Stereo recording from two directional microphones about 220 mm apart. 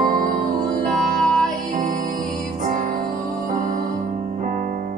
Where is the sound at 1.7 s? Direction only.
35° right (ahead or behind).